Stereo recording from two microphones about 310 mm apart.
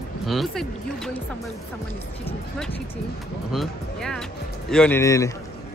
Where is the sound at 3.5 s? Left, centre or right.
Centre.